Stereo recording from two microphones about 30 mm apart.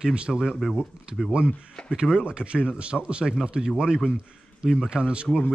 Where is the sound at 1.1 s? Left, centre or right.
Right.